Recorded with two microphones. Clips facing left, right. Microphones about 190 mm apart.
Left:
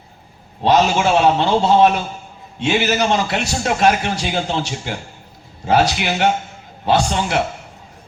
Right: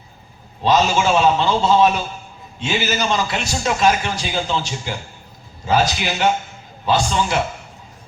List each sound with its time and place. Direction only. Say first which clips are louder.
0.6 s a man's voice: left 2 dB; 60° left (ahead or behind)